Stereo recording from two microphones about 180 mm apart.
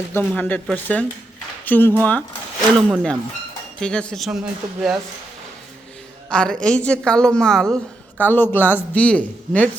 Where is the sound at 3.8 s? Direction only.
5° left (ahead or behind).